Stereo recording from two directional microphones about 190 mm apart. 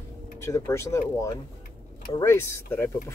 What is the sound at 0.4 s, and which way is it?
Speech, 15° left (ahead or behind).